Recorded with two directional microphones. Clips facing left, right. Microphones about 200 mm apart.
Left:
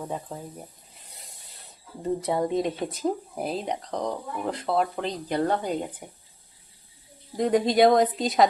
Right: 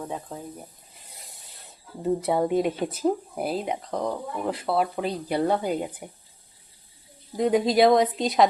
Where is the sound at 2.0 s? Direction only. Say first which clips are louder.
Right 2 dB; 5° right (ahead or behind).